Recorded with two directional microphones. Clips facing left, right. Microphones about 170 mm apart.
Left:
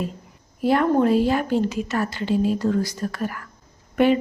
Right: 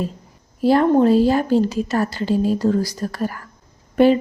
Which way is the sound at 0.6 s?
30° right (ahead or behind).